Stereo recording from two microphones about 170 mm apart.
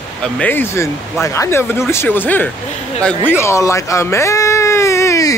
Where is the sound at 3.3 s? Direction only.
15° left (ahead or behind).